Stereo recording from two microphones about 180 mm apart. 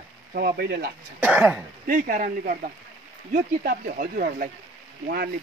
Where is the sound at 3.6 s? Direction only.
50° right (ahead or behind).